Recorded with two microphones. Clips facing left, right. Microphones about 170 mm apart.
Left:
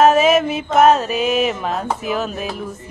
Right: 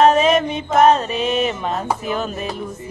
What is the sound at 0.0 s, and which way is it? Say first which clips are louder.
Music: left 1 dB; 5° left (ahead or behind).